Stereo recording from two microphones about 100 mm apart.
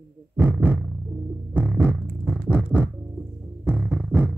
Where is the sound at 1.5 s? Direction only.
15° right (ahead or behind).